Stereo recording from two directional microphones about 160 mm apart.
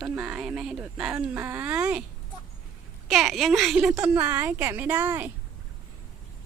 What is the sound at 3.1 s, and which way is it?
A woman's voice, centre (ahead or behind).